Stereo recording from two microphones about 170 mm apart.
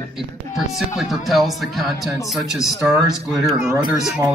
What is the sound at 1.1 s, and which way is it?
A man's voice, centre (ahead or behind).